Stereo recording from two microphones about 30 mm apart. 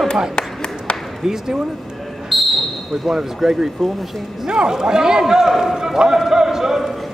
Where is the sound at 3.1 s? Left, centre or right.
Centre.